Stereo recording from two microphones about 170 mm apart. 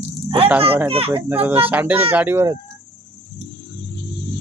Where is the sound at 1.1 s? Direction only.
10° right (ahead or behind).